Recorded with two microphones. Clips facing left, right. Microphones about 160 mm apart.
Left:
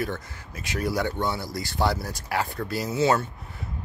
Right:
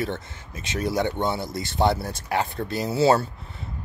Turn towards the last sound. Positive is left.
turn(degrees=-35)  # may be behind; listen again after turning